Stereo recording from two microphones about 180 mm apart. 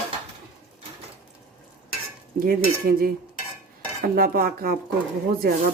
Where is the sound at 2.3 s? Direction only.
55° right (ahead or behind).